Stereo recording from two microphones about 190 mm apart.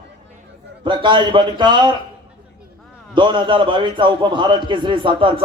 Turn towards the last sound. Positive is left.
turn(degrees=-25)  # may be behind; listen again after turning